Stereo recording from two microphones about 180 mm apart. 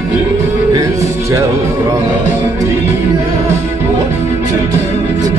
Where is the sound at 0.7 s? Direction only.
20° right (ahead or behind).